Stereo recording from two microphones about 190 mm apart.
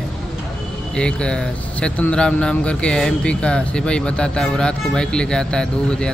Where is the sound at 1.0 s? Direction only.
5° left (ahead or behind).